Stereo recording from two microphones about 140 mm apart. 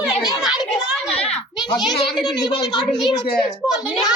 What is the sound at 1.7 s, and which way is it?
Speech, 30° left (ahead or behind).